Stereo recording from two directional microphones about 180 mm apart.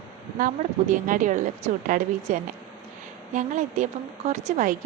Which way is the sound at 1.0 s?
45° right (ahead or behind).